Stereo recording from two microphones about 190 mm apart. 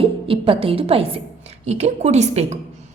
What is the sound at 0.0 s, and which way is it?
A woman's voice, 30° right (ahead or behind).